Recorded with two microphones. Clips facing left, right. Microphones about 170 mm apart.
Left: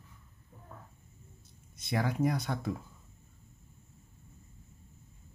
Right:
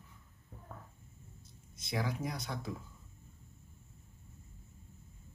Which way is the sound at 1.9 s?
60° left (ahead or behind).